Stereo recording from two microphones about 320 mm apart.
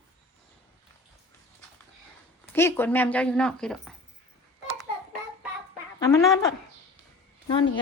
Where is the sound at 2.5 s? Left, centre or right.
Centre.